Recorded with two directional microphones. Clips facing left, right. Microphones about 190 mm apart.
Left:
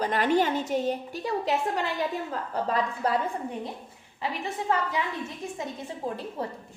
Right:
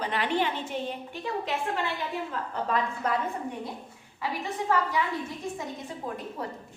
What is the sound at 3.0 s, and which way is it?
Speech, 35° left (ahead or behind).